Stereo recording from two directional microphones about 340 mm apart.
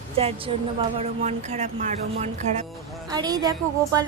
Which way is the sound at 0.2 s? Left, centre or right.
Centre.